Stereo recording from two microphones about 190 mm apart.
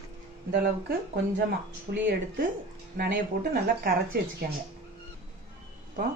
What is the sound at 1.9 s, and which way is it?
Speech, 50° right (ahead or behind).